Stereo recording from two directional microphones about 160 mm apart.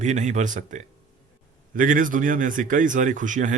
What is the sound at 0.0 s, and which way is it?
Speech, 50° right (ahead or behind).